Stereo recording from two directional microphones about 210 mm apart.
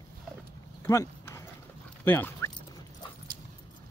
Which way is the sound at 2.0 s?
10° left (ahead or behind).